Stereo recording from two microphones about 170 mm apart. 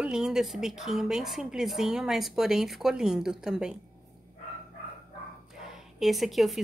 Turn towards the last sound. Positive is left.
turn(degrees=0)  # may be behind; listen again after turning